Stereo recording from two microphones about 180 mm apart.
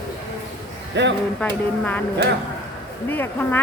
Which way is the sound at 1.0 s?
80° right.